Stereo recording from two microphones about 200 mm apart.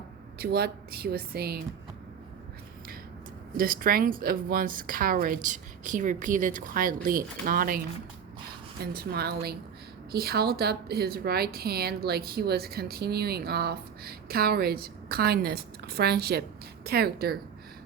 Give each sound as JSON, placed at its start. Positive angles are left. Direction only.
{"t": 0.3, "sound": "a woman's voice", "side_deg": -50}
{"t": 3.6, "sound": "a woman's voice", "side_deg": -45}
{"t": 8.8, "sound": "a woman's voice", "side_deg": -50}